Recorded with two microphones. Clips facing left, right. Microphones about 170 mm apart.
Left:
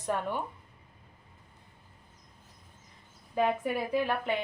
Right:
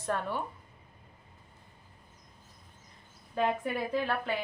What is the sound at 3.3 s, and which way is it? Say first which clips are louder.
A woman's voice: left 2 dB; 10° left (ahead or behind).